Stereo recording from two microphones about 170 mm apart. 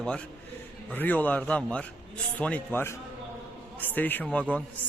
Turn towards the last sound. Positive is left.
turn(degrees=10)  # may be behind; listen again after turning